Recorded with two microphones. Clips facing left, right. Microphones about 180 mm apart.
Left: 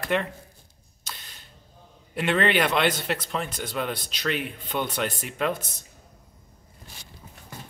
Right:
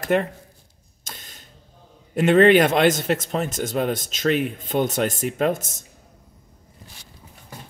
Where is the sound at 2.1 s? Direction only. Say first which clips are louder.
Right 9 dB; 45° right (ahead or behind).